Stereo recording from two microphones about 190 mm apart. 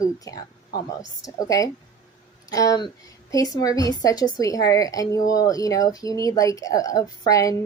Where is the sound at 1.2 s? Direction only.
20° left (ahead or behind).